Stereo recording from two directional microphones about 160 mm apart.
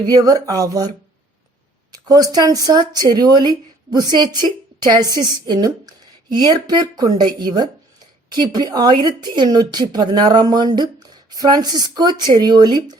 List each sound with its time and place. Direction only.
0.0 s speech: 25° right (ahead or behind)
2.0 s speech: 25° right (ahead or behind)